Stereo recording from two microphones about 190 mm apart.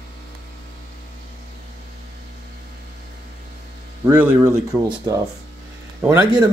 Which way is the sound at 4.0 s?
10° right (ahead or behind).